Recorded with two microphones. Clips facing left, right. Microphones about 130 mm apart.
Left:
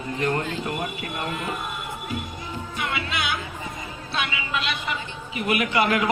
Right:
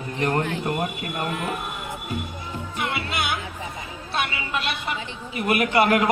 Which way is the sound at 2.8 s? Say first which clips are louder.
Right 1 dB; 50° right (ahead or behind).